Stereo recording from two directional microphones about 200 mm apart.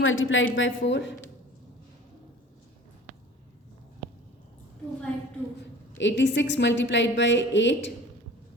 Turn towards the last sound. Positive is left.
turn(degrees=65)  # may be behind; listen again after turning